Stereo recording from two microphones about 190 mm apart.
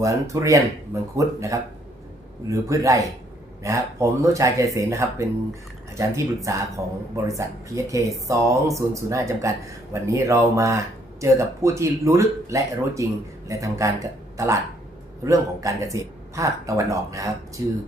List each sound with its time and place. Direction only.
0.0 s speech: 15° right (ahead or behind)